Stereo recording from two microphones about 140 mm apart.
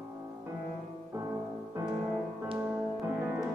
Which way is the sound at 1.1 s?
20° right (ahead or behind).